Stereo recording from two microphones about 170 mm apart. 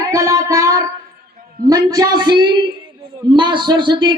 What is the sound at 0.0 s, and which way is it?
Music, 20° right (ahead or behind).